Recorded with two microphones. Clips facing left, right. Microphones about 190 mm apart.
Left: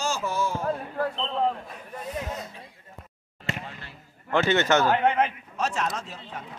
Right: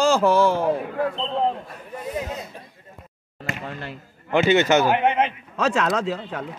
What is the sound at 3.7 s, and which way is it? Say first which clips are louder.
Speech: right 10 dB; 65° right (ahead or behind).